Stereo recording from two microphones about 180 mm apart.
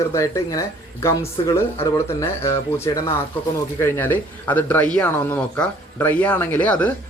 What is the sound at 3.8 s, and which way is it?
A man's voice, 10° left (ahead or behind).